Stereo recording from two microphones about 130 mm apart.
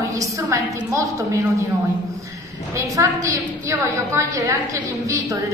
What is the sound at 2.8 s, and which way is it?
A woman's voice, 25° right (ahead or behind).